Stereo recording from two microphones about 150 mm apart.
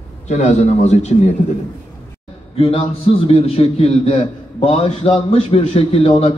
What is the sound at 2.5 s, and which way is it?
A man's voice, 40° left (ahead or behind).